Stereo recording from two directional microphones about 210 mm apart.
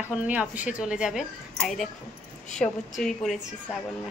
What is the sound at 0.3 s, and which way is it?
A woman's voice, 5° right (ahead or behind).